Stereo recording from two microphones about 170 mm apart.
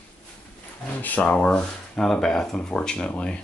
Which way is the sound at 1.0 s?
10° left (ahead or behind).